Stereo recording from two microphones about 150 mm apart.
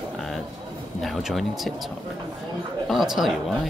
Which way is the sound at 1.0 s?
Centre (ahead or behind).